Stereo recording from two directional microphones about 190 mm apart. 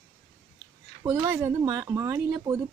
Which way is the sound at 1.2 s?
15° right (ahead or behind).